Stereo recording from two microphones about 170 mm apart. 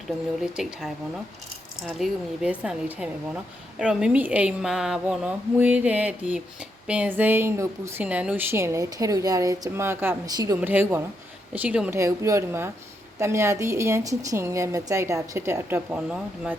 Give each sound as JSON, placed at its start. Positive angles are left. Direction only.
{"t": 0.4, "sound": "speech", "side_deg": -5}
{"t": 10.6, "sound": "speech", "side_deg": -10}